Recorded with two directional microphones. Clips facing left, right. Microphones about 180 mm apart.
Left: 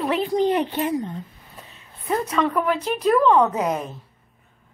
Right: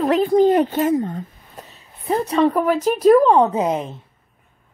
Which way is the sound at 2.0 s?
35° right (ahead or behind).